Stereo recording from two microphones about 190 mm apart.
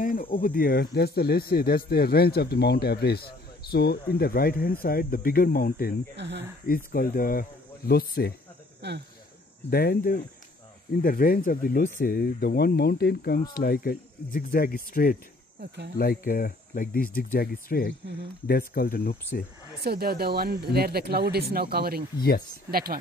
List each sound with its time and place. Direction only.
0.0 s speech: 45° left (ahead or behind)
6.1 s speech: 65° right (ahead or behind)
6.7 s speech: 50° left (ahead or behind)
8.8 s speech: 65° right (ahead or behind)
9.7 s speech: 50° left (ahead or behind)
15.6 s speech: 65° right (ahead or behind)
16.0 s speech: 50° left (ahead or behind)
19.8 s speech: 55° right (ahead or behind)